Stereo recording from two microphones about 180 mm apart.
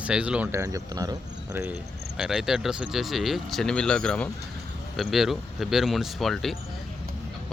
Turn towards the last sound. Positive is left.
turn(degrees=0)  # may be behind; listen again after turning